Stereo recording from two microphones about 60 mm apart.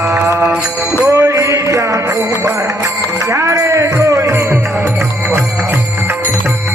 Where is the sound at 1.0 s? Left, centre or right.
Right.